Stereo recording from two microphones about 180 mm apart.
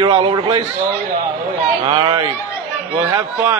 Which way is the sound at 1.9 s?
30° right (ahead or behind).